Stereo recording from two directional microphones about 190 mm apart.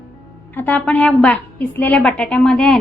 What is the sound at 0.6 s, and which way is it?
A woman's voice, 10° left (ahead or behind).